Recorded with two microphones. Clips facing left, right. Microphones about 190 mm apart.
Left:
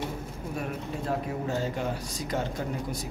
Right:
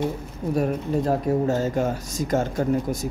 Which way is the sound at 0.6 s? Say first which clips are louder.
Right 11 dB; 40° right (ahead or behind).